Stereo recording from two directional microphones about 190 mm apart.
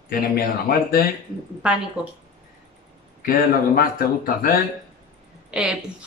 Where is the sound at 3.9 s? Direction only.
50° left (ahead or behind).